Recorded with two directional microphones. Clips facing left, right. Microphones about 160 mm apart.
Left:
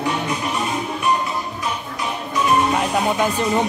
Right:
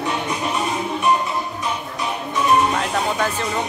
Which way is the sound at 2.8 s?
15° left (ahead or behind).